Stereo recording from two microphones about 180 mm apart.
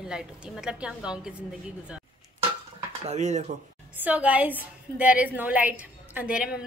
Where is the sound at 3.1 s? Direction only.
40° right (ahead or behind).